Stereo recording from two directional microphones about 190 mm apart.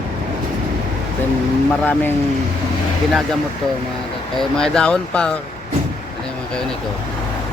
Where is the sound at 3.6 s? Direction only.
5° left (ahead or behind).